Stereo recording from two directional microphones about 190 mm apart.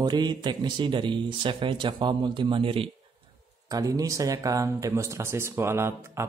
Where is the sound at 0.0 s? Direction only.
20° right (ahead or behind).